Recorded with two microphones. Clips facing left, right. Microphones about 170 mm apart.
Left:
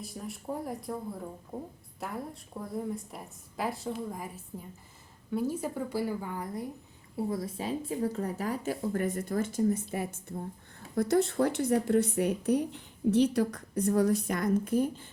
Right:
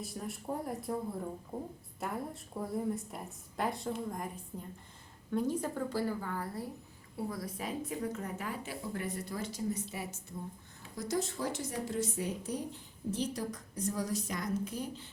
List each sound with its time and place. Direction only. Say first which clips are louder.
0.0 s a woman's voice: left 1 dB; centre (ahead or behind); by 15.0 s 50° left (ahead or behind)